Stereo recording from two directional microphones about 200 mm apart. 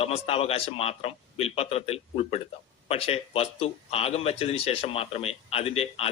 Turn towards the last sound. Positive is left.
turn(degrees=30)  # may be behind; listen again after turning